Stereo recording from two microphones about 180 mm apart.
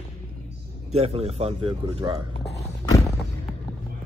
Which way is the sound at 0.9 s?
35° right (ahead or behind).